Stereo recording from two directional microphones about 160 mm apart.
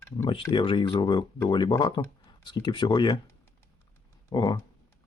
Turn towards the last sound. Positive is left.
turn(degrees=25)  # may be behind; listen again after turning